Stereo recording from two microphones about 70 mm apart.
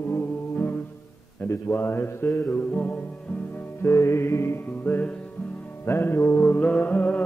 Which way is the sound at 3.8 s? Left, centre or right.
Left.